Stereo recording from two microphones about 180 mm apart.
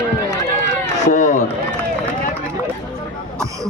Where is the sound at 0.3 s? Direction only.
15° left (ahead or behind).